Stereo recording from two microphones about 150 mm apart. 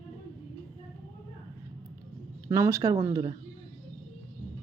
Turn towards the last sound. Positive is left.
turn(degrees=-30)  # may be behind; listen again after turning